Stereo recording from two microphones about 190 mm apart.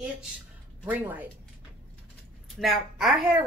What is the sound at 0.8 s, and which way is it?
Speech, 10° right (ahead or behind).